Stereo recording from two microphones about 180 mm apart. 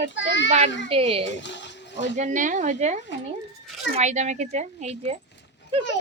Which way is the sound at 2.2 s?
45° right (ahead or behind).